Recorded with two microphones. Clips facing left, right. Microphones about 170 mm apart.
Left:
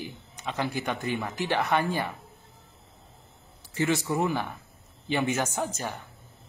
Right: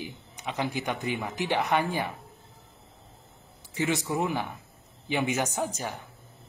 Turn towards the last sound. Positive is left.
turn(degrees=-10)  # may be behind; listen again after turning